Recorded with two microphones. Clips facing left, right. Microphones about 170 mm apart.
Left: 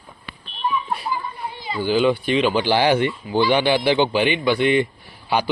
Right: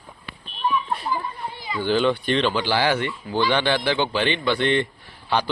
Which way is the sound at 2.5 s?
15° left (ahead or behind).